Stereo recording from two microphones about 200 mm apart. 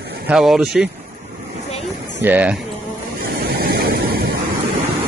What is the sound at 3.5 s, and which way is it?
Vehicle, 50° right (ahead or behind).